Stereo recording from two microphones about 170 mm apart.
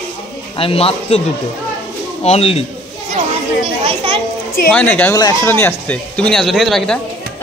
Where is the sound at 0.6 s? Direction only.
35° left (ahead or behind).